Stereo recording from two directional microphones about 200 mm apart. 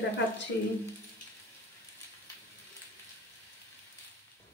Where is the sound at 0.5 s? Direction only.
55° left (ahead or behind).